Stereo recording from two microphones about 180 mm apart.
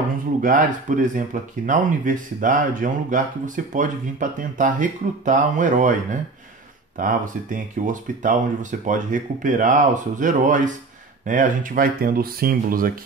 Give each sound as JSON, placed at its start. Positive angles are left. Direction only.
{"t": 0.4, "sound": "speech", "side_deg": -45}
{"t": 7.0, "sound": "speech", "side_deg": -45}